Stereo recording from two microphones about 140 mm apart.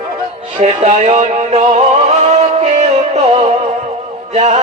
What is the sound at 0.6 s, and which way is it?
Music, 50° right (ahead or behind).